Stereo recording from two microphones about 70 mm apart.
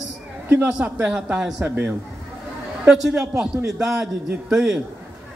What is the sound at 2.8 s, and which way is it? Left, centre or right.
A woman's voice, centre.